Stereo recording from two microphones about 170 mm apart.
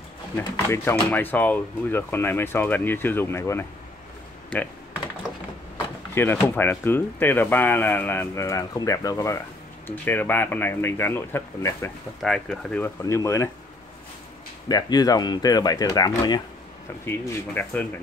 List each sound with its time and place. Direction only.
0.4 s speech: 15° left (ahead or behind)
6.1 s speech: 15° left (ahead or behind)
12.2 s speech: 5° left (ahead or behind)
14.7 s speech: 25° left (ahead or behind)